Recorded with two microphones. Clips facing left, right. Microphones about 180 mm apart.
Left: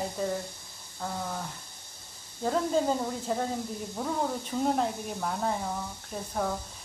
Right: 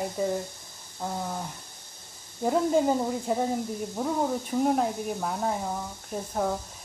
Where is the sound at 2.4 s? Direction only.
15° right (ahead or behind).